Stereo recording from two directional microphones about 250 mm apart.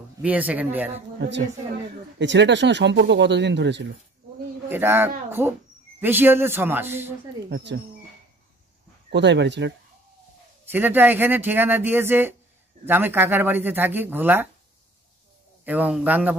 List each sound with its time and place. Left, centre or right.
0.2 s speech: centre
2.1 s speech: right
4.6 s speech: centre
7.4 s speech: right
9.1 s speech: right
10.7 s speech: centre
15.6 s speech: centre